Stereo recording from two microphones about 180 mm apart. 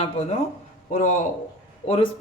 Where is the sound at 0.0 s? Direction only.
35° left (ahead or behind).